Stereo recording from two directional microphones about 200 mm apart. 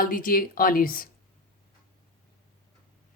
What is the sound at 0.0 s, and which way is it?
Speech, 45° left (ahead or behind).